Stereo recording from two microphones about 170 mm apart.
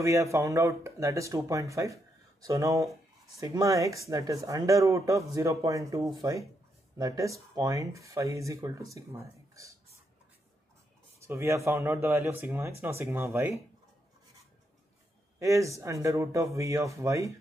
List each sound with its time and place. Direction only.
0.0 s speech: 20° right (ahead or behind)
11.2 s speech: 15° right (ahead or behind)
15.3 s speech: 20° right (ahead or behind)